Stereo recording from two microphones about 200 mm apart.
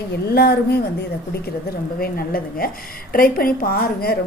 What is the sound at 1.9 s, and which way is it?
A woman's voice, 50° left (ahead or behind).